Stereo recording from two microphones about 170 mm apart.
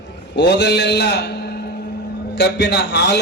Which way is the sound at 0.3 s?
85° left.